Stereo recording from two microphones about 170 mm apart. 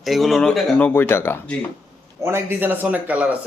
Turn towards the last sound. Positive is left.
turn(degrees=-10)  # may be behind; listen again after turning